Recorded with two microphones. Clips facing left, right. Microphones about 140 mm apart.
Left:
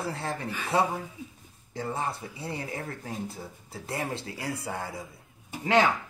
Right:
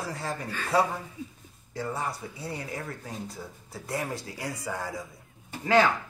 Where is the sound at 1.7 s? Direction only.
25° left (ahead or behind).